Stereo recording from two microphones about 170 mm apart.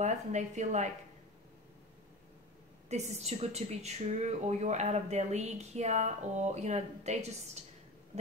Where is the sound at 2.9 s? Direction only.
40° right (ahead or behind).